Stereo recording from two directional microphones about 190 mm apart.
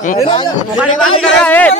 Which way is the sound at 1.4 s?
10° left (ahead or behind).